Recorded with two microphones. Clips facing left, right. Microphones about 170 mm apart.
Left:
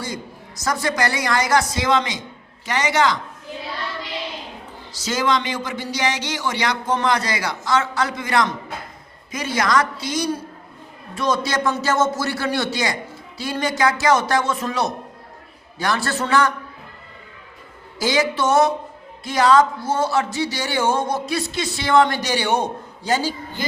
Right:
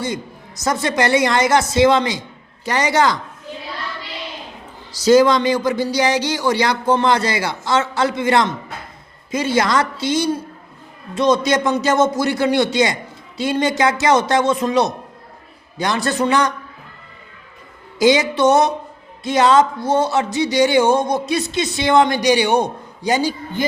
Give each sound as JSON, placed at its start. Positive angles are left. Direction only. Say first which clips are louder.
{"t": 0.6, "sound": "speech", "louder": "right 3 dB", "side_deg": -25}
{"t": 4.9, "sound": "speech", "louder": "right 10 dB", "side_deg": -35}
{"t": 18.0, "sound": "speech", "louder": "right 6 dB", "side_deg": -20}